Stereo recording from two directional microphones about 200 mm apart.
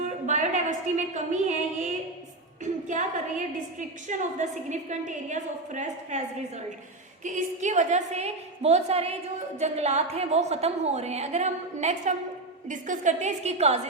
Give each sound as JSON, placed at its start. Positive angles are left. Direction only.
{"t": 0.3, "sound": "a sound", "side_deg": -40}
{"t": 2.8, "sound": "a woman's voice", "side_deg": -40}
{"t": 7.3, "sound": "a woman's voice", "side_deg": -35}